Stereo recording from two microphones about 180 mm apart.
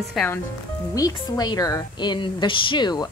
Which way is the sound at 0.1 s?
5° left (ahead or behind).